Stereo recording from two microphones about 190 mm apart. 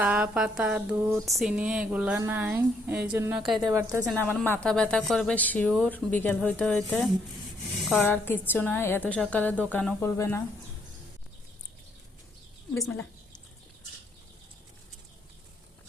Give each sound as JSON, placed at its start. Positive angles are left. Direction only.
{"t": 0.0, "sound": "speech", "side_deg": -5}
{"t": 3.7, "sound": "speech", "side_deg": -15}
{"t": 4.1, "sound": "a woman's voice", "side_deg": 5}
{"t": 12.8, "sound": "speech", "side_deg": 5}